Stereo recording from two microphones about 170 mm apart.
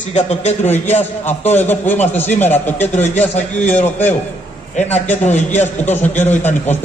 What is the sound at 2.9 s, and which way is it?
Speech, 40° left (ahead or behind).